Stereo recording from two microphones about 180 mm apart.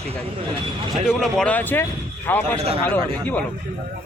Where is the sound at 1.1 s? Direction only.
Centre (ahead or behind).